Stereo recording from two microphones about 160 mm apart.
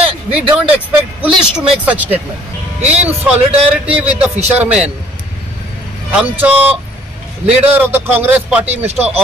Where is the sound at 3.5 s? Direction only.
35° right (ahead or behind).